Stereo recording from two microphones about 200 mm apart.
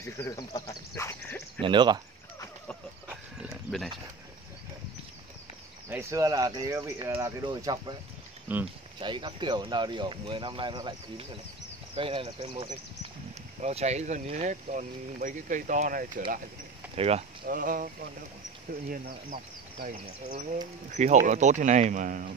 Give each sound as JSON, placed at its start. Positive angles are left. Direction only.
{"t": 0.0, "sound": "speech", "side_deg": 15}
{"t": 1.6, "sound": "speech", "side_deg": -25}
{"t": 3.1, "sound": "a sound", "side_deg": 0}
{"t": 5.9, "sound": "speech", "side_deg": -15}
{"t": 8.5, "sound": "speech", "side_deg": -10}
{"t": 9.0, "sound": "speech", "side_deg": -25}
{"t": 16.9, "sound": "speech", "side_deg": -30}
{"t": 17.5, "sound": "speech", "side_deg": -45}